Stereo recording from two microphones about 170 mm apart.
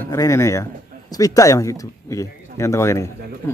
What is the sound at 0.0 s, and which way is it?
Speech, 20° left (ahead or behind).